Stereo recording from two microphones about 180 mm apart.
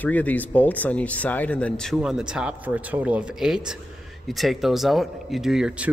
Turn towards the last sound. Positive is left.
turn(degrees=-5)  # may be behind; listen again after turning